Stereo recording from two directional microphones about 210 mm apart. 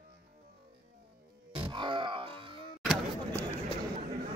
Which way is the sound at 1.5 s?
25° right (ahead or behind).